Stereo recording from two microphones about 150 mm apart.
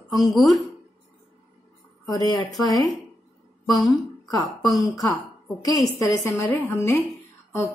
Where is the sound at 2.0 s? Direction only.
25° left (ahead or behind).